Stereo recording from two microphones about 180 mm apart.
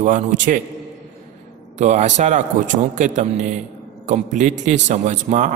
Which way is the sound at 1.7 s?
40° right (ahead or behind).